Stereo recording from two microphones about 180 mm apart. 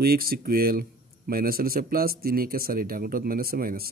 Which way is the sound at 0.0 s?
55° right (ahead or behind).